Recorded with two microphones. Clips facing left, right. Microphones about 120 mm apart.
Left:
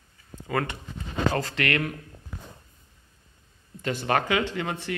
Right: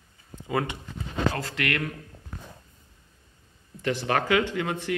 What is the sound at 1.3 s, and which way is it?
Speech, centre (ahead or behind).